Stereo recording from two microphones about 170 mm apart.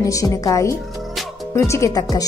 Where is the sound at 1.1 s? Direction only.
Centre (ahead or behind).